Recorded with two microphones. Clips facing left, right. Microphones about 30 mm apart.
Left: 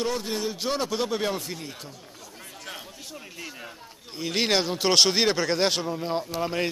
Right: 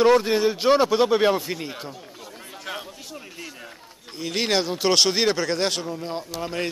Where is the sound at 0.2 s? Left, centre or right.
Right.